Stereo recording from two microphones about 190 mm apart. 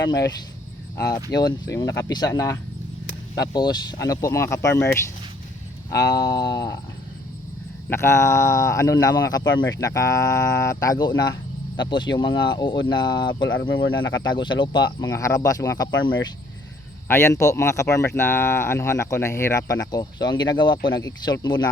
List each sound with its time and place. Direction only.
0.1 s speech: 20° left (ahead or behind)
5.9 s speech: 20° left (ahead or behind)
7.9 s speech: 15° left (ahead or behind)
17.1 s speech: 15° left (ahead or behind)